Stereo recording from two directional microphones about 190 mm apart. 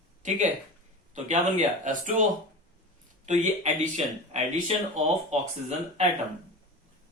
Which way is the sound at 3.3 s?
40° right (ahead or behind).